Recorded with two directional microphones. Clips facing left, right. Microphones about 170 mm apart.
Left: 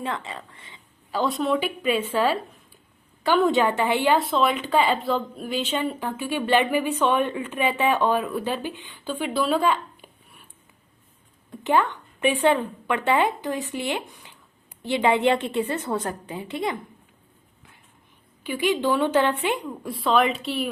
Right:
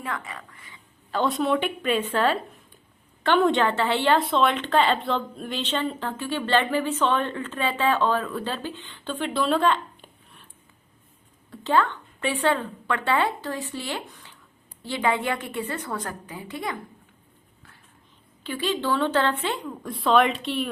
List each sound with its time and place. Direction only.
0.0 s a woman's voice: 25° left (ahead or behind)
1.1 s a woman's voice: centre (ahead or behind)
3.6 s speech: 15° left (ahead or behind)
11.5 s a woman's voice: 20° left (ahead or behind)
18.4 s speech: 15° left (ahead or behind)